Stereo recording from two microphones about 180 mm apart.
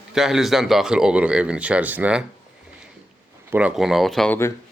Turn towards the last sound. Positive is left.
turn(degrees=10)  # may be behind; listen again after turning